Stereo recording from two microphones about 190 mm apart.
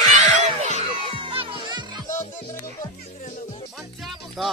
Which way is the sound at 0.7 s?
35° left (ahead or behind).